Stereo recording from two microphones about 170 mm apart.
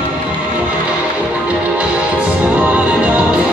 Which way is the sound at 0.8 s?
10° right (ahead or behind).